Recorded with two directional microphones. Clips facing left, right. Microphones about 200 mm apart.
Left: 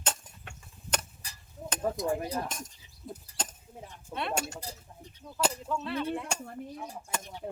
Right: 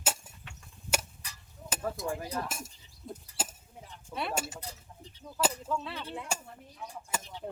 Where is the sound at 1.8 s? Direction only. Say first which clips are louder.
Left 5 dB; 20° left (ahead or behind).